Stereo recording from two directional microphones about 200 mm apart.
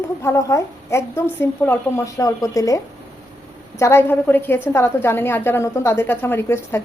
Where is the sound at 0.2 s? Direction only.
15° left (ahead or behind).